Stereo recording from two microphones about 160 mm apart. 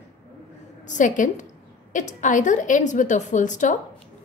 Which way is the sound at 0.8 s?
50° left (ahead or behind).